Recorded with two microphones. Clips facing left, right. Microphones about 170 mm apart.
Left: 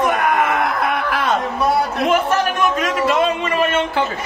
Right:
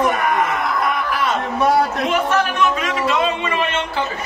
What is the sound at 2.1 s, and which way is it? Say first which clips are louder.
A man's voice: left 1 dB; 45° left (ahead or behind).